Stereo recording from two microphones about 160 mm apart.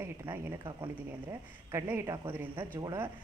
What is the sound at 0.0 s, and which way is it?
Speech, 15° right (ahead or behind).